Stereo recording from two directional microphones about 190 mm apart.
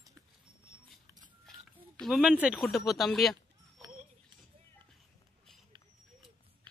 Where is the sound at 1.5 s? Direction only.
5° left (ahead or behind).